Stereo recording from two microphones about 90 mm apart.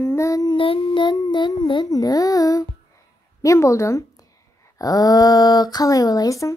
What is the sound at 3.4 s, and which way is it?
A woman's voice, 35° left (ahead or behind).